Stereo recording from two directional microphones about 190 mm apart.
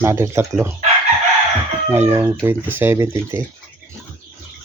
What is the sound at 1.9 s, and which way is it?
Speech, 10° right (ahead or behind).